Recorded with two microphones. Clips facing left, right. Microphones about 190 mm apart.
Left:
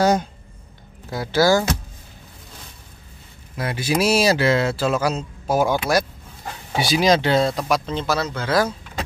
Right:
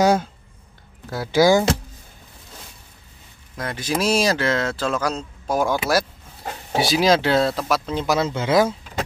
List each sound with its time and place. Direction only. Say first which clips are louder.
0.0 s speech: right 1 dB; 10° right (ahead or behind)
1.4 s speech: right 2 dB; 15° right (ahead or behind)
3.5 s speech: left 3 dB; 10° left (ahead or behind); by 8.2 s 10° right (ahead or behind)
8.2 s speech: right 4 dB; 20° right (ahead or behind)